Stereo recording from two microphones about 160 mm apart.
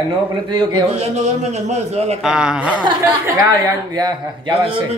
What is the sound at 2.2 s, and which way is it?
Speech, 5° right (ahead or behind).